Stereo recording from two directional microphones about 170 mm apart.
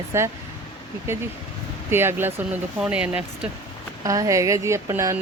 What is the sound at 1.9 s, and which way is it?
Speech, 15° right (ahead or behind).